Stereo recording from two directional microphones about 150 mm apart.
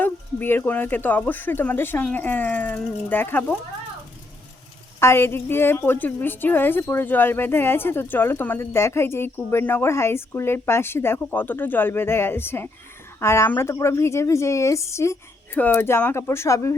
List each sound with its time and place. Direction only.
0.0 s a woman's voice: 15° left (ahead or behind)
4.9 s a woman's voice: 15° left (ahead or behind)